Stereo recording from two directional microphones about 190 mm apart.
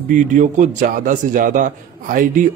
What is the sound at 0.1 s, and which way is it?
A man's voice, 40° right (ahead or behind).